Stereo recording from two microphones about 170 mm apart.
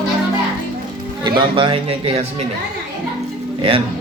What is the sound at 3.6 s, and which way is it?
Speech, 35° right (ahead or behind).